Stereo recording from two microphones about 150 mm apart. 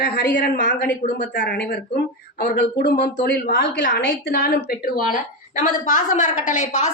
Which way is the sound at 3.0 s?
85° left.